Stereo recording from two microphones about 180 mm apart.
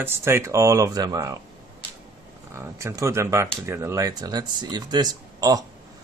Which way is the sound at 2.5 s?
15° right (ahead or behind).